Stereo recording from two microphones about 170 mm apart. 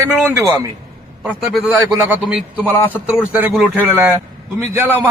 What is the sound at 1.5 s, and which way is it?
A man's voice, 5° right (ahead or behind).